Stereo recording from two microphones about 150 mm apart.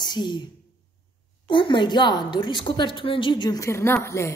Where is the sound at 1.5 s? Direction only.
30° left (ahead or behind).